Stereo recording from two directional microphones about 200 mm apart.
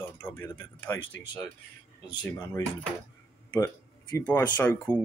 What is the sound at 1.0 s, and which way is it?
Speech, 70° left (ahead or behind).